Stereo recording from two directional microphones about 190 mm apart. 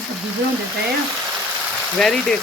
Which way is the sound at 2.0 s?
Centre (ahead or behind).